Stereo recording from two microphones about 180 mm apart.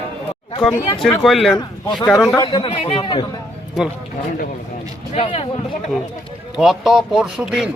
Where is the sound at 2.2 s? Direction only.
25° left (ahead or behind).